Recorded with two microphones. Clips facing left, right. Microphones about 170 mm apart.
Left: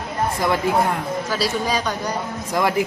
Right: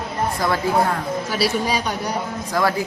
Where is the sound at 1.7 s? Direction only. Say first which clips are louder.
Even; 10° right (ahead or behind).